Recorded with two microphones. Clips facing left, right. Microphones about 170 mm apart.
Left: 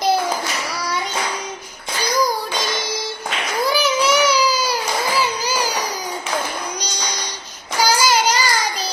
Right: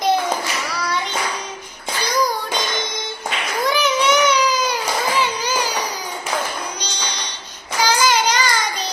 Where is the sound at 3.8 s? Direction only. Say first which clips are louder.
Right 1 dB; 5° left (ahead or behind).